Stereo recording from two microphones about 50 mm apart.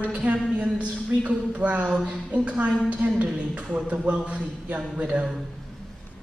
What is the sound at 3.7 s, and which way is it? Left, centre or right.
Speech, right.